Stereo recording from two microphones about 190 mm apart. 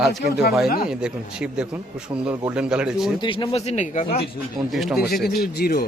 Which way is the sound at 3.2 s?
25° left (ahead or behind).